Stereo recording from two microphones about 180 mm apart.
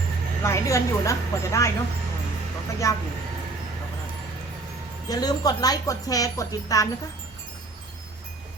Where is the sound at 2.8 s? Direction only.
15° left (ahead or behind).